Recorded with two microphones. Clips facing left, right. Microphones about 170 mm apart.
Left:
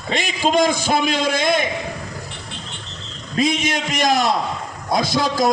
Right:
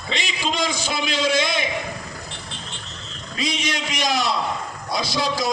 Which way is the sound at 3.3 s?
50° left (ahead or behind).